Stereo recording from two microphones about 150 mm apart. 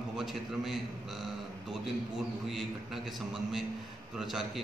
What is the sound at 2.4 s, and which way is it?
A man's voice, centre (ahead or behind).